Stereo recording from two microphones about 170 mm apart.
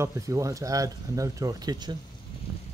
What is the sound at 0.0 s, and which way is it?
Speech, 15° right (ahead or behind).